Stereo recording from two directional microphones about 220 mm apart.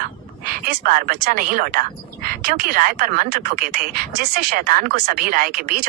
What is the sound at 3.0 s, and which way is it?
Speech, 40° right (ahead or behind).